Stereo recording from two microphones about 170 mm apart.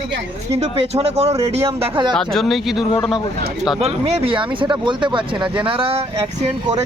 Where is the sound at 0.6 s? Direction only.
35° right (ahead or behind).